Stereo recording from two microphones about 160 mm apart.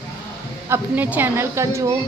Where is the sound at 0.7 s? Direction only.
10° right (ahead or behind).